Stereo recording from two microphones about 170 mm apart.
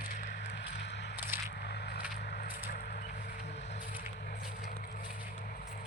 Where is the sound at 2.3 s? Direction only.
60° left (ahead or behind).